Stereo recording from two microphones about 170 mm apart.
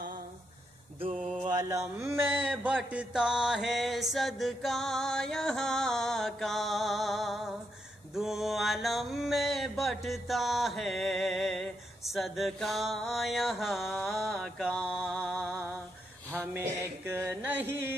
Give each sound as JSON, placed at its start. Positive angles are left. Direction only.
{"t": 1.5, "sound": "a sound", "side_deg": -20}
{"t": 2.4, "sound": "mantra", "side_deg": -10}
{"t": 15.1, "sound": "music", "side_deg": 0}
{"t": 16.5, "sound": "music", "side_deg": -15}